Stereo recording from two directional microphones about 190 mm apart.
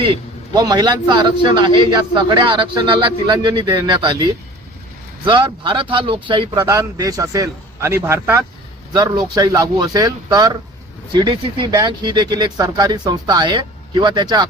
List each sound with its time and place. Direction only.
0.5 s a man's voice: 20° right (ahead or behind)